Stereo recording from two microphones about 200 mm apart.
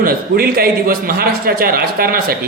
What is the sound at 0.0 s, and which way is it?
Speech, 50° right (ahead or behind).